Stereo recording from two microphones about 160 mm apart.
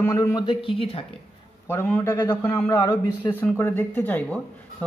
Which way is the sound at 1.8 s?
10° left (ahead or behind).